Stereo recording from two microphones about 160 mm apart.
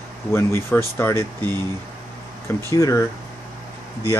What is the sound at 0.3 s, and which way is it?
Speech, 15° left (ahead or behind).